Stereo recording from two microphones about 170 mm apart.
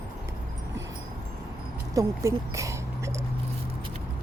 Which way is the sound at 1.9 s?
15° right (ahead or behind).